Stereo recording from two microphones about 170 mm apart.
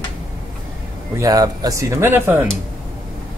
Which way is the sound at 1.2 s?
20° right (ahead or behind).